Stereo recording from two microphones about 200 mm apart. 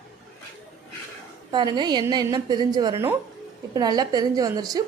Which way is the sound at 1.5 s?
20° right (ahead or behind).